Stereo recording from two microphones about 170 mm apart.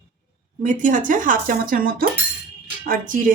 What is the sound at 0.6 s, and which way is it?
Speech, 50° right (ahead or behind).